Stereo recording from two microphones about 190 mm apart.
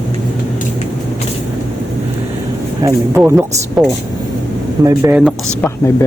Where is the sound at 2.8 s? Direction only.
15° right (ahead or behind).